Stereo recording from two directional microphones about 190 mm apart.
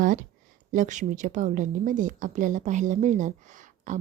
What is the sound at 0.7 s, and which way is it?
Speech, 40° right (ahead or behind).